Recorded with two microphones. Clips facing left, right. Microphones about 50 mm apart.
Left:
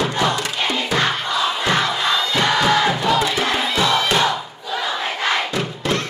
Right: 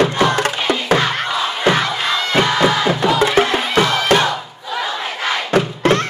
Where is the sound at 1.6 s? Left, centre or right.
Centre.